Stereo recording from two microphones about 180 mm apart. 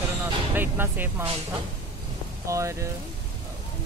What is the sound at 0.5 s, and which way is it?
Speech, 10° right (ahead or behind).